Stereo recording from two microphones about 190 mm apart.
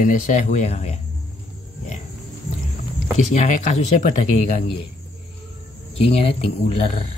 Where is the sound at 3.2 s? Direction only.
40° left (ahead or behind).